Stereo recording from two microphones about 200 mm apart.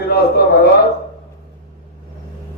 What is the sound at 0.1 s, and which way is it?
Speech, 50° left (ahead or behind).